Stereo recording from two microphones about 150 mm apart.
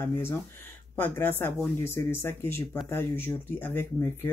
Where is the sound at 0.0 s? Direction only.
15° left (ahead or behind).